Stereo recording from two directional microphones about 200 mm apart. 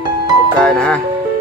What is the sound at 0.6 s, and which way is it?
Speech, 5° left (ahead or behind).